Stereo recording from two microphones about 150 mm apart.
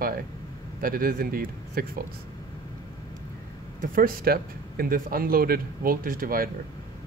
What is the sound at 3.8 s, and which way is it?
Speech, 70° right (ahead or behind).